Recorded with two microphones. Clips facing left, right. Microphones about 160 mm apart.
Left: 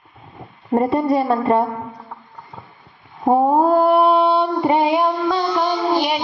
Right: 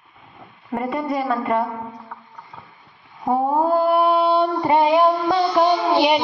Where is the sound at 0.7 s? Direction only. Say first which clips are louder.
Left 6 dB; 35° left (ahead or behind).